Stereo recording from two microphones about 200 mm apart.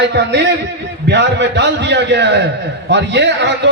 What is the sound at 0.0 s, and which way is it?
A man's voice, 60° right (ahead or behind).